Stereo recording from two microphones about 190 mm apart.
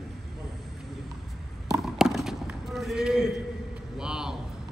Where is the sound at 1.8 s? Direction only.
Centre (ahead or behind).